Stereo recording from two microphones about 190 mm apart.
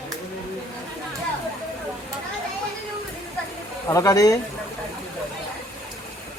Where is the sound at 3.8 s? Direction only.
15° left (ahead or behind).